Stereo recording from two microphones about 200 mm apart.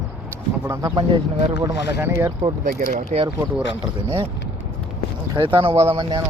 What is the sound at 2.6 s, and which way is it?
Speech, 40° right (ahead or behind).